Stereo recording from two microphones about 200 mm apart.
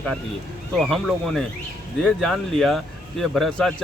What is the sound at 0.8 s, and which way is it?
Speech, centre (ahead or behind).